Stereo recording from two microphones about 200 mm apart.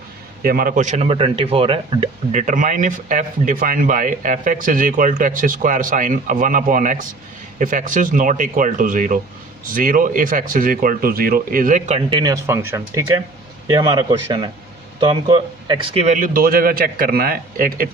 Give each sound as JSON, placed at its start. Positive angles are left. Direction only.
{"t": 0.4, "sound": "a man's voice", "side_deg": -45}